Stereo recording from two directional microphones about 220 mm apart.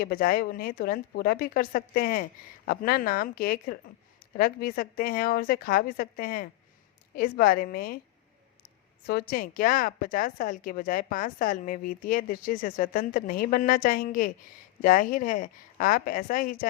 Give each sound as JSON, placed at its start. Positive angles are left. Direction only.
{"t": 0.0, "sound": "speech", "side_deg": 40}